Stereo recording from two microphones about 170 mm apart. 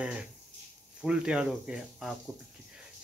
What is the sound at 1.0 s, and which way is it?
Speech, 5° right (ahead or behind).